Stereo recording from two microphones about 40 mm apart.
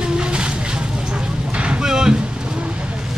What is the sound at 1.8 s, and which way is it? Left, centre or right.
Speech, centre.